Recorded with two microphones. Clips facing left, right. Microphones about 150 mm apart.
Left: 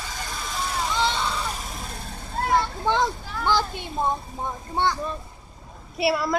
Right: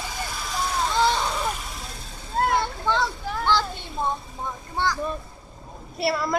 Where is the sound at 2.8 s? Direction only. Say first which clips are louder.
Left 1 dB; 15° left (ahead or behind).